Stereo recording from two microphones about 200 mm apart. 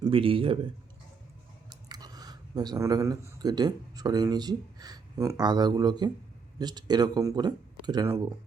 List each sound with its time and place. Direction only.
0.0 s a man's voice: 25° right (ahead or behind)
1.7 s speech: 20° right (ahead or behind)